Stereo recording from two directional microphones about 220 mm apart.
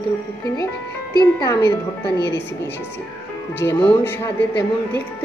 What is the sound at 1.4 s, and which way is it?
Speech, 15° left (ahead or behind).